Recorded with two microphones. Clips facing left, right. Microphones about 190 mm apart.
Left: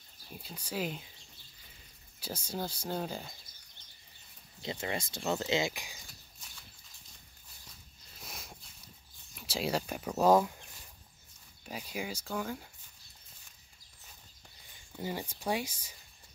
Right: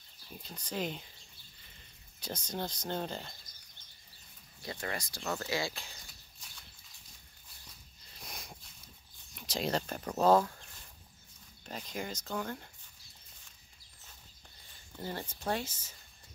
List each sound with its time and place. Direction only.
0.3 s speech: 10° left (ahead or behind)
2.1 s speech: 5° left (ahead or behind)
4.6 s speech: 20° left (ahead or behind)
5.9 s a sound: centre (ahead or behind)
8.1 s a sound: centre (ahead or behind)
9.3 s speech: 5° left (ahead or behind)
15.0 s speech: 10° left (ahead or behind)